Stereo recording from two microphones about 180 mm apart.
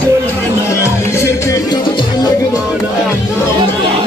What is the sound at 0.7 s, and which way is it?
Music, 15° left (ahead or behind).